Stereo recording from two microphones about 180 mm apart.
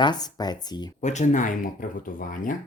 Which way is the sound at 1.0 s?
40° left (ahead or behind).